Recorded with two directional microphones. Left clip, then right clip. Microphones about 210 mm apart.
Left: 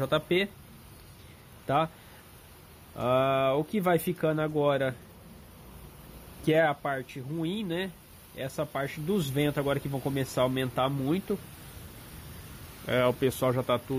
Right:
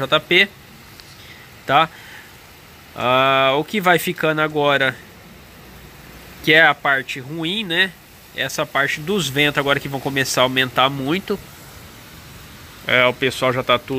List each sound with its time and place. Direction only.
0.0 s speech: 5° left (ahead or behind)
3.0 s speech: centre (ahead or behind)
6.4 s speech: centre (ahead or behind)
9.0 s speech: 25° right (ahead or behind)
9.3 s speech: centre (ahead or behind)
12.8 s speech: 10° left (ahead or behind)